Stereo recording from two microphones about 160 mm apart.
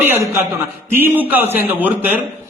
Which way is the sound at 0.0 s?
15° right (ahead or behind).